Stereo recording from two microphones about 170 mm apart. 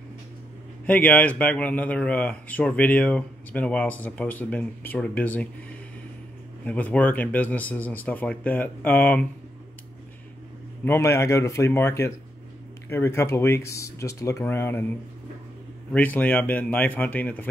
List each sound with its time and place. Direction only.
0.8 s speech: 10° left (ahead or behind)
6.6 s speech: 5° left (ahead or behind)
10.9 s speech: 15° left (ahead or behind)
15.9 s speech: 10° left (ahead or behind)